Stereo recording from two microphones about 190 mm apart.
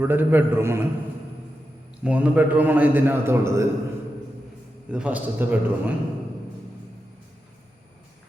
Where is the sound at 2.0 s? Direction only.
5° right (ahead or behind).